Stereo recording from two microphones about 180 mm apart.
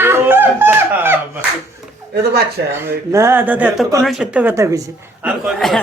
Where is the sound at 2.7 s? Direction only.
15° right (ahead or behind).